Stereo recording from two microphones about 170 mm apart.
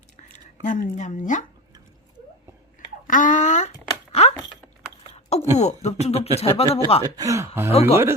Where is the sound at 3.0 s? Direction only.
50° left (ahead or behind).